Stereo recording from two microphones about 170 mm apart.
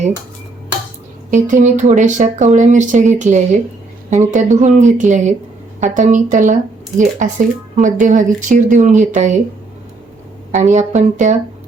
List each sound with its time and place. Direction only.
1.3 s speech: 50° right (ahead or behind)
10.5 s speech: 45° right (ahead or behind)